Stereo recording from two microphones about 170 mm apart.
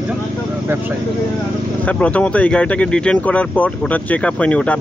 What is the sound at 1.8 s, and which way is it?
Speech, 10° left (ahead or behind).